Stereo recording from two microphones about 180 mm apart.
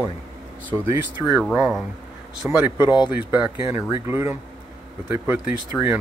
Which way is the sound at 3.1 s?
10° right (ahead or behind).